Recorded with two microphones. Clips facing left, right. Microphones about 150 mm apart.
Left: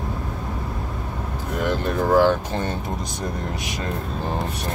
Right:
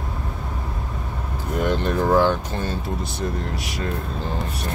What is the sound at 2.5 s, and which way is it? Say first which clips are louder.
Speech: left 1 dB; 20° left (ahead or behind).